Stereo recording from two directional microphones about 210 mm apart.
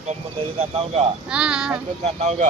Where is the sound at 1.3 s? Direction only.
5° right (ahead or behind).